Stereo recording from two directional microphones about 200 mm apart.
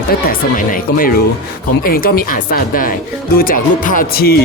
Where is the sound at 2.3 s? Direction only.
45° left (ahead or behind).